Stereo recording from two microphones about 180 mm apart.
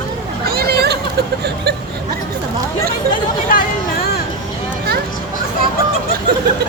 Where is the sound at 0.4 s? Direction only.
60° right (ahead or behind).